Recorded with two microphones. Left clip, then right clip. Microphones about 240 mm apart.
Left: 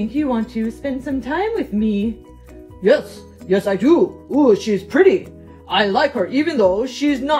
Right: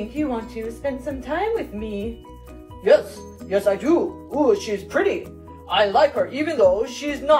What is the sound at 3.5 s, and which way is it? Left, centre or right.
A woman's voice, left.